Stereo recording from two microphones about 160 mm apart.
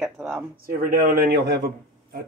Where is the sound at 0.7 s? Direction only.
65° right (ahead or behind).